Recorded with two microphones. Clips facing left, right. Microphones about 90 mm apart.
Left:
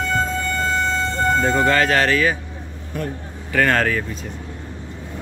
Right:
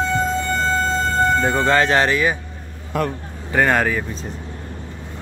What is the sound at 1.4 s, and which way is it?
Speech, 20° right (ahead or behind).